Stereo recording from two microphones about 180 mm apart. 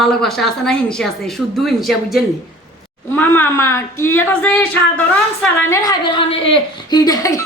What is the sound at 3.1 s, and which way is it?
Speech, 10° left (ahead or behind).